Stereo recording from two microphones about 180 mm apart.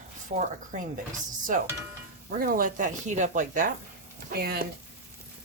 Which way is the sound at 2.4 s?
50° right (ahead or behind).